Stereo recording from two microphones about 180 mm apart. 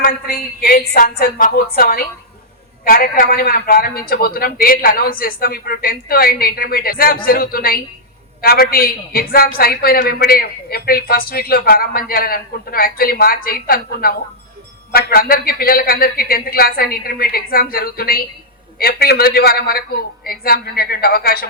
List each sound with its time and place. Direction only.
0.0 s speech: 55° left (ahead or behind)